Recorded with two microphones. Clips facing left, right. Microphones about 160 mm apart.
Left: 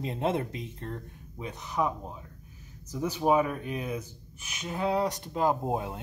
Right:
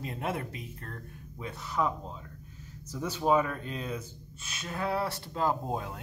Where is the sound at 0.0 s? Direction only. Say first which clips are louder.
Left 5 dB; 25° left (ahead or behind).